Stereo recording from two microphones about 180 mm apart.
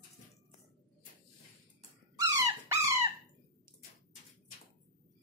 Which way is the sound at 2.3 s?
15° right (ahead or behind).